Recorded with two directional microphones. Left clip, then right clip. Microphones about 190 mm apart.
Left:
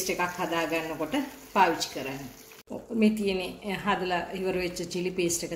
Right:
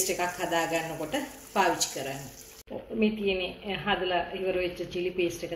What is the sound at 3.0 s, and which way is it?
A woman's voice, 75° left (ahead or behind).